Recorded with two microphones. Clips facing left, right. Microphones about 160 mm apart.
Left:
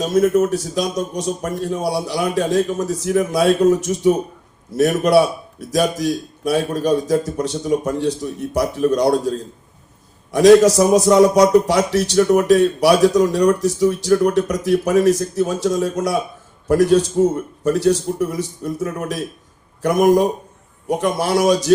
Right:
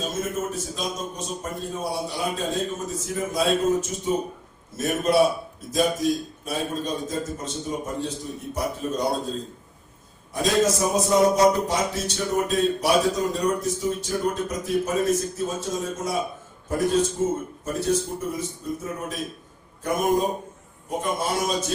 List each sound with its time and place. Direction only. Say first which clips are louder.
0.0 s a man's voice: left 13 dB; 70° left (ahead or behind)
10.3 s speech: left 12 dB; 75° left (ahead or behind)